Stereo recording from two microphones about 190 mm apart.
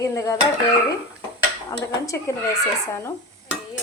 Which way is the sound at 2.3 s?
15° left (ahead or behind).